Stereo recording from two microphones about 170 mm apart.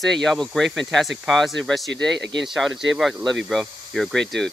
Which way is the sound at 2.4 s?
Centre (ahead or behind).